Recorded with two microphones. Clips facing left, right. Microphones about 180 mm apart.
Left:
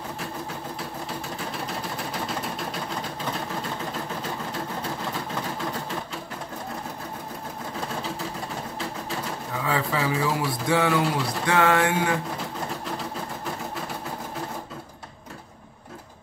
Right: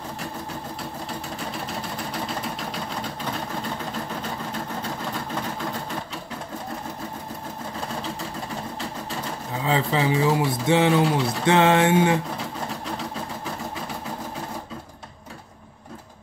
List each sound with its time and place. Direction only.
9.6 s speech: 25° right (ahead or behind)